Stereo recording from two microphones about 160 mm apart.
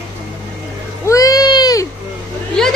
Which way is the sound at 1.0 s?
20° left (ahead or behind).